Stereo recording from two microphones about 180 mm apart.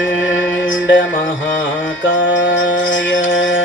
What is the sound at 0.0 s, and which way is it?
Music, 90° left.